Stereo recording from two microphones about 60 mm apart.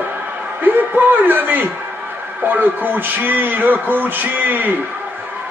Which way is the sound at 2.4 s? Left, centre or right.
Right.